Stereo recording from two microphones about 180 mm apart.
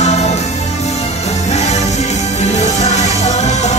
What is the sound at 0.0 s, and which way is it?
Music, 40° left (ahead or behind).